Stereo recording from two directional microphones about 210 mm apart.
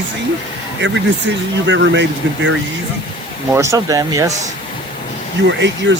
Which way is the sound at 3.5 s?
15° right (ahead or behind).